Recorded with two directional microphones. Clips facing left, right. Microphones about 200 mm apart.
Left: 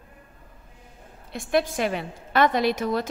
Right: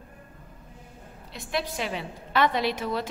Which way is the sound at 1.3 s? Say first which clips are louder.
Left 7 dB; 50° left (ahead or behind).